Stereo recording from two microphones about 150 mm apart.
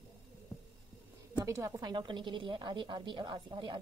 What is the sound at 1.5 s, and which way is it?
A woman's voice, 20° right (ahead or behind).